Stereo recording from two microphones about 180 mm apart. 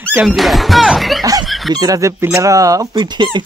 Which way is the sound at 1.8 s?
20° right (ahead or behind).